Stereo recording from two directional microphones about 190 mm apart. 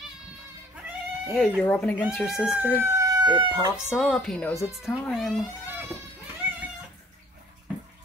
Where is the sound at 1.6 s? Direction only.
5° left (ahead or behind).